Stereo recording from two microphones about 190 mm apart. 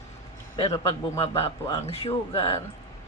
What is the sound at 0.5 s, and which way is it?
A man's voice, 25° left (ahead or behind).